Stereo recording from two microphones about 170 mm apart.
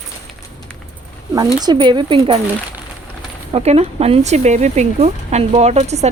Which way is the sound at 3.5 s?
40° right (ahead or behind).